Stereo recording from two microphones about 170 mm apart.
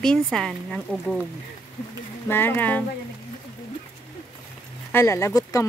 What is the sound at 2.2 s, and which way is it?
Speech, 15° left (ahead or behind).